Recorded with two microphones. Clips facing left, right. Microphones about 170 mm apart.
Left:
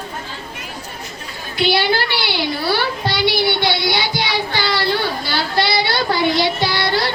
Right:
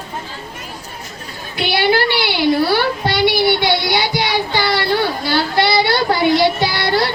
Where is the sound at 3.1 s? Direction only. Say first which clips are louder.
Right 3 dB; 50° right (ahead or behind).